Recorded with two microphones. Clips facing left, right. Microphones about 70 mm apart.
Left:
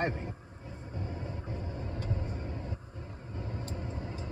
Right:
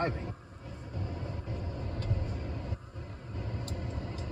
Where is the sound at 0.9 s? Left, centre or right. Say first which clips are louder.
Even; left.